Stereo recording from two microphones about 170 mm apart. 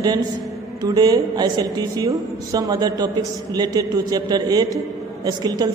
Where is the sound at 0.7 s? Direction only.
20° right (ahead or behind).